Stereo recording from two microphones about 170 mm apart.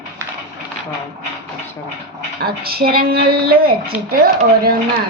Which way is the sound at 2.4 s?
65° right (ahead or behind).